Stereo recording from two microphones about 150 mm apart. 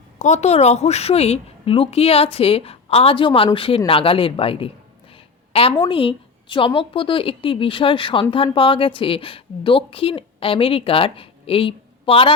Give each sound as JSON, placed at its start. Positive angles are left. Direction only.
{"t": 0.2, "sound": "a woman's voice", "side_deg": 50}
{"t": 5.1, "sound": "a sound", "side_deg": 40}
{"t": 5.8, "sound": "a woman's voice", "side_deg": 35}